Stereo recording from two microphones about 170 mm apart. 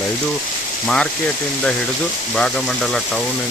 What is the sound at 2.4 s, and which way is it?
Speech, centre (ahead or behind).